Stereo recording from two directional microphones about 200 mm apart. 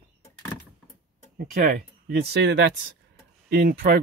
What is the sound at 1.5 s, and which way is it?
Speech, 45° right (ahead or behind).